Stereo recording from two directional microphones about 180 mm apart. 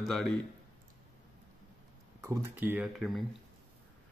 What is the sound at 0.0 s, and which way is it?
Speech, centre (ahead or behind).